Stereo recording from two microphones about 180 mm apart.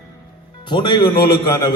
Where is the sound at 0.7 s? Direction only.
25° left (ahead or behind).